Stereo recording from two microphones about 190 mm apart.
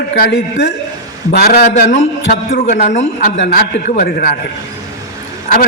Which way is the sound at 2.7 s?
40° left (ahead or behind).